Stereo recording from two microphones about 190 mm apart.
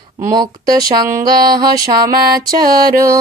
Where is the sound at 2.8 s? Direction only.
20° right (ahead or behind).